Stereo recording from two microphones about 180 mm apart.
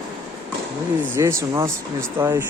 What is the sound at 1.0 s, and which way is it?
Speech, 15° right (ahead or behind).